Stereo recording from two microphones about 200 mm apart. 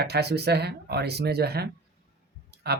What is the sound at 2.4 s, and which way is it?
Clicking, 55° right (ahead or behind).